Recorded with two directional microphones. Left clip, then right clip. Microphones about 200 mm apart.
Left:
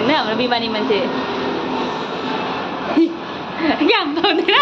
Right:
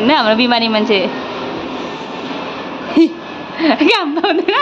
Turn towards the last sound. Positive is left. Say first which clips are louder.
# right 1 dB
turn(degrees=-35)  # may be behind; listen again after turning